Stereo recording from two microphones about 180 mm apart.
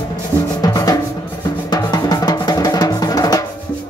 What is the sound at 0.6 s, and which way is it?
Drum, 20° left (ahead or behind).